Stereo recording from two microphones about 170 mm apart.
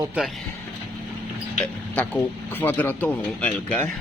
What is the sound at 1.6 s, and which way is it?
Speech, 10° left (ahead or behind).